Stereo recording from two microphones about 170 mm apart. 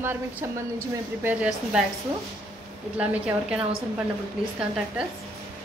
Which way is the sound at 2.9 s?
5° right (ahead or behind).